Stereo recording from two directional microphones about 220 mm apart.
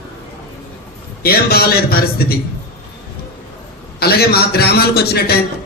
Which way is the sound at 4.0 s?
45° left (ahead or behind).